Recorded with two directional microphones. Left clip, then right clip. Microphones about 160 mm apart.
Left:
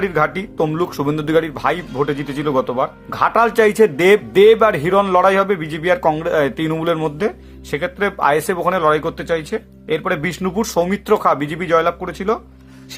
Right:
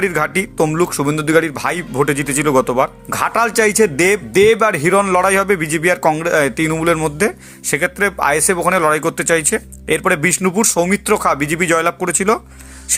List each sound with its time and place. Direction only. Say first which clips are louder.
0.0 s speech: right 1 dB; 30° right (ahead or behind)
1.9 s speech: right 4 dB; 30° right (ahead or behind)
7.3 s speech: right 3 dB; 30° right (ahead or behind)